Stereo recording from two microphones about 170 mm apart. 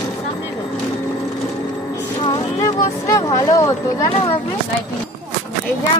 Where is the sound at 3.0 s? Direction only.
20° left (ahead or behind).